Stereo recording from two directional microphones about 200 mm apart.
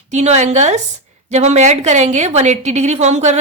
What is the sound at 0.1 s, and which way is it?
Speech, 35° right (ahead or behind).